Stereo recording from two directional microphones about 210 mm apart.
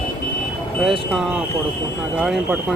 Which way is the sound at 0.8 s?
Centre (ahead or behind).